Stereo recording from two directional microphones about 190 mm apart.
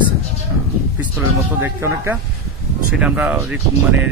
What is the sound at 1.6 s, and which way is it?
Speech, 10° right (ahead or behind).